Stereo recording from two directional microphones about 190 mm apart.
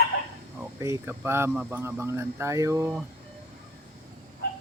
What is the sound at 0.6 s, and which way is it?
Speech, 15° right (ahead or behind).